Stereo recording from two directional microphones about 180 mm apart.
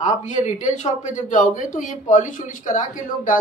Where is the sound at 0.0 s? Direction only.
45° left (ahead or behind).